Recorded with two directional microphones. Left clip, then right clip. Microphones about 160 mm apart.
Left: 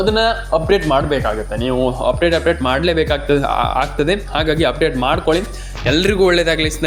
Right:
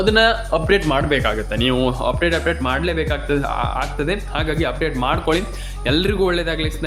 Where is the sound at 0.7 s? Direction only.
Centre (ahead or behind).